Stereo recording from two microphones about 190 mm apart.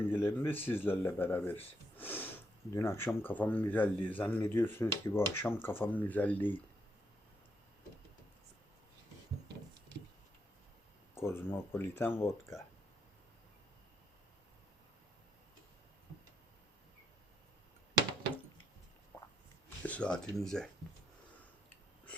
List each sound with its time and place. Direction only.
0.0 s speech: 10° left (ahead or behind)
11.1 s speech: 15° left (ahead or behind)
19.1 s a sound: 20° left (ahead or behind)
19.8 s speech: 5° left (ahead or behind)